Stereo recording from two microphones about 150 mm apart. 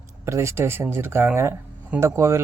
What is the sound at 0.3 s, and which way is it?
Speech, 20° right (ahead or behind).